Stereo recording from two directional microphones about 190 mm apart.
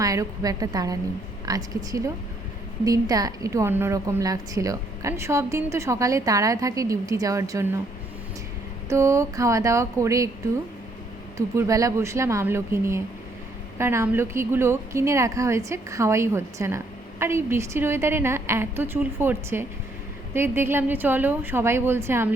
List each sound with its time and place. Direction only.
0.0 s a woman's voice: 20° right (ahead or behind)
8.9 s a woman's voice: 15° right (ahead or behind)
11.3 s a woman's voice: 15° right (ahead or behind)